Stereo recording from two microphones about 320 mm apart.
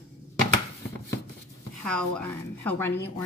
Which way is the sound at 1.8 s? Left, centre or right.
Centre.